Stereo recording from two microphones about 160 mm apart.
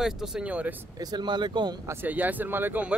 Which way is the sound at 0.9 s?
25° right (ahead or behind).